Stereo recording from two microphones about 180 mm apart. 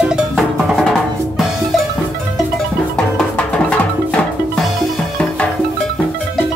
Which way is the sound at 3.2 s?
5° left (ahead or behind).